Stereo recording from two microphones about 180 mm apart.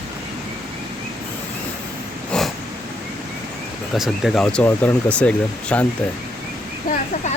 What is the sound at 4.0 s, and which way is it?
Speech, centre (ahead or behind).